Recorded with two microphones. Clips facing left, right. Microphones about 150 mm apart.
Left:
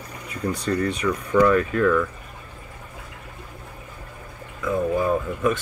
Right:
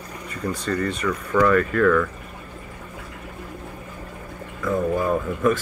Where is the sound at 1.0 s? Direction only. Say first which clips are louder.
Left 1 dB; 20° left (ahead or behind).